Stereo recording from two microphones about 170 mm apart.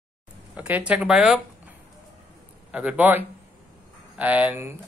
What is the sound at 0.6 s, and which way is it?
Speech, 10° right (ahead or behind).